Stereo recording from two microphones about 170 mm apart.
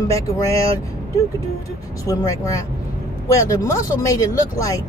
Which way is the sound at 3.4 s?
20° left (ahead or behind).